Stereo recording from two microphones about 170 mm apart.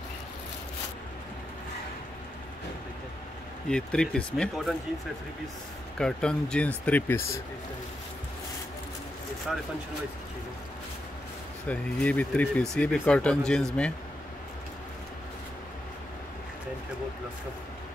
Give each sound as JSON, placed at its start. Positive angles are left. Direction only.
{"t": 3.6, "sound": "speech", "side_deg": 5}
{"t": 5.9, "sound": "speech", "side_deg": 5}
{"t": 9.5, "sound": "speech", "side_deg": 0}
{"t": 11.6, "sound": "speech", "side_deg": 10}